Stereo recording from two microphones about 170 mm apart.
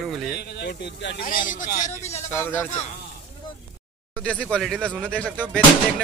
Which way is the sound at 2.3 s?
10° left (ahead or behind).